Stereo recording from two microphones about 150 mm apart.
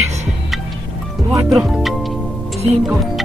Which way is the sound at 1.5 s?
Centre (ahead or behind).